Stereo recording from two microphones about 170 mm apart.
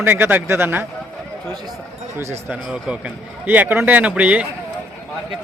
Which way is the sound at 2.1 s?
15° right (ahead or behind).